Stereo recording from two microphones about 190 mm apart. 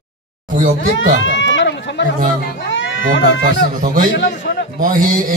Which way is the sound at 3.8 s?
45° right (ahead or behind).